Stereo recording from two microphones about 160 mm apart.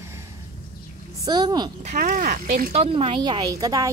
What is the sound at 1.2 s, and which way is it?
Speech, 25° right (ahead or behind).